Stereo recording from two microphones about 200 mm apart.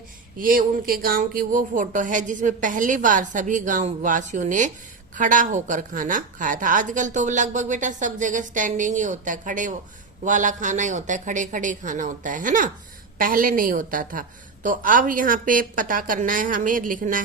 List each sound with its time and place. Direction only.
0.3 s a woman's voice: 45° right (ahead or behind)